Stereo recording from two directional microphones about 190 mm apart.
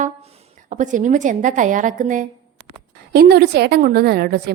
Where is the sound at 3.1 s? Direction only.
55° right (ahead or behind).